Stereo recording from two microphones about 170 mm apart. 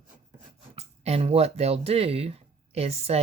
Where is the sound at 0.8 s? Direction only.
40° right (ahead or behind).